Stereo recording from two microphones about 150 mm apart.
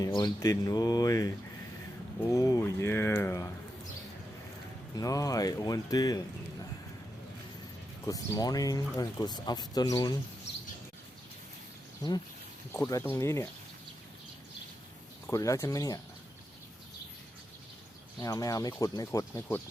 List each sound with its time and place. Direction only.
0.0 s speech: 25° left (ahead or behind)
2.3 s speech: 20° left (ahead or behind)
4.9 s speech: 25° left (ahead or behind)
8.0 s speech: 25° left (ahead or behind)
12.9 s speech: 20° left (ahead or behind)
15.3 s speech: 20° left (ahead or behind)
18.2 s speech: 25° left (ahead or behind)